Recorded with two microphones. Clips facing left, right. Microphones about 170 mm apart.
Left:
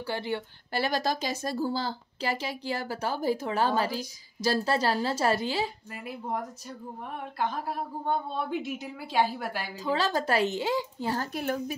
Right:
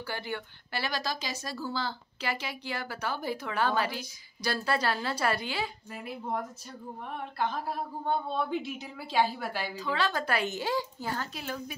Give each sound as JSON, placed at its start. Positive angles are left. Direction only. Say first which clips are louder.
{"t": 0.0, "sound": "a child's voice", "louder": "left 5 dB", "side_deg": 25}
{"t": 0.7, "sound": "a woman's voice", "louder": "left 6 dB", "side_deg": 50}
{"t": 5.9, "sound": "a woman's voice", "louder": "left 1 dB", "side_deg": 5}
{"t": 9.8, "sound": "a woman's voice", "louder": "left 4 dB", "side_deg": 40}
{"t": 10.6, "sound": "a child's voice", "louder": "left 2 dB", "side_deg": 20}
{"t": 11.3, "sound": "speech", "louder": "left 7 dB", "side_deg": 50}